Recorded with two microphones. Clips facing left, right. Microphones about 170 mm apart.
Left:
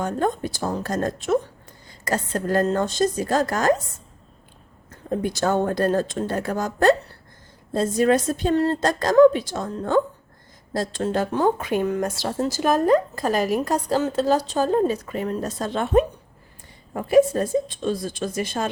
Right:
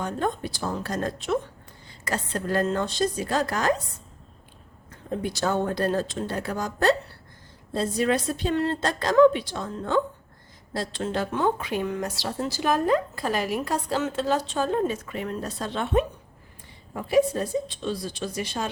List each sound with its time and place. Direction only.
0.0 s speech: 45° left (ahead or behind)
4.9 s speech: 50° left (ahead or behind)